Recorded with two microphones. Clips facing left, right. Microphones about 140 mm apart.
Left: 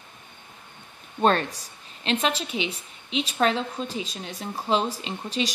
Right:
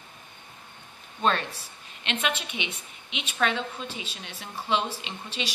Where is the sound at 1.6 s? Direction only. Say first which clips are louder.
Left 3 dB; 35° left (ahead or behind).